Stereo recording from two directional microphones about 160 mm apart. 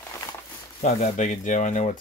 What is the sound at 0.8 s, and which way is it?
Speech, 50° left (ahead or behind).